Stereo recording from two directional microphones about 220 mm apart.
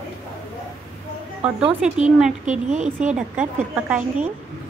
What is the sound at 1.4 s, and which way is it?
Speech, 5° right (ahead or behind).